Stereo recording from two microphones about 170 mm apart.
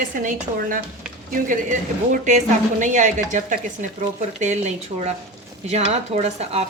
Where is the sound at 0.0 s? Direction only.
50° right (ahead or behind).